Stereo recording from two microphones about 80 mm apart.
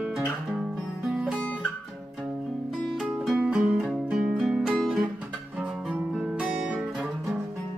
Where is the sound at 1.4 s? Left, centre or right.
Centre.